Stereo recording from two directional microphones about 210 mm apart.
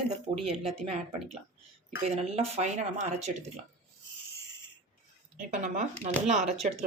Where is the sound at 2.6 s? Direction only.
35° right (ahead or behind).